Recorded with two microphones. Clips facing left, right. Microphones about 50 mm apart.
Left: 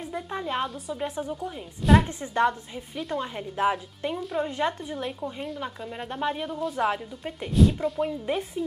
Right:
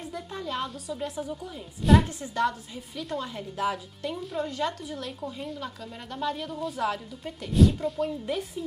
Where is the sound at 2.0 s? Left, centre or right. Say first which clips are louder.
Left 3 dB; left.